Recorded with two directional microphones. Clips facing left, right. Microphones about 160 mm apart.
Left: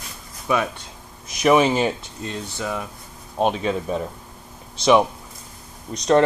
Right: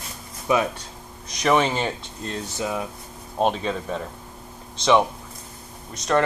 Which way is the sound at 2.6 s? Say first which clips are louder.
Right 1 dB; 15° right (ahead or behind).